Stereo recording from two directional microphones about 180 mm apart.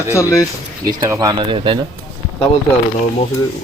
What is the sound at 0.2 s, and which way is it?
Speech, 15° left (ahead or behind).